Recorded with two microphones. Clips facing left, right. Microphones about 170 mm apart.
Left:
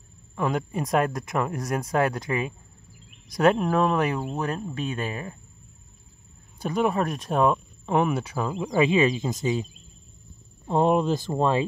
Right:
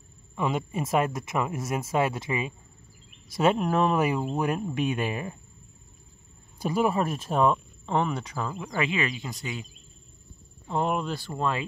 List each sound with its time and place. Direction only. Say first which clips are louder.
0.4 s speech: left 2 dB; centre (ahead or behind)
6.6 s speech: left 1 dB; 5° right (ahead or behind); by 9.7 s 25° left (ahead or behind)
10.7 s speech: left 6 dB; 25° left (ahead or behind)